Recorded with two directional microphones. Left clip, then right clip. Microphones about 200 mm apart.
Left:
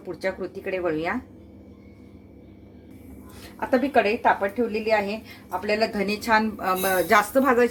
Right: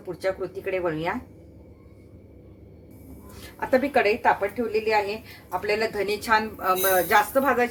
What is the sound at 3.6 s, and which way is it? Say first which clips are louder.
Speech: even; 25° left (ahead or behind).